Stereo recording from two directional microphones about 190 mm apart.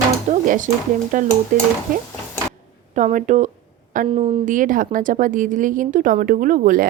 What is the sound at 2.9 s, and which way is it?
Speech, 40° right (ahead or behind).